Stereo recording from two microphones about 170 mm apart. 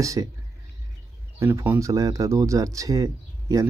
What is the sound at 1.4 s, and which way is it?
Speech, 15° right (ahead or behind).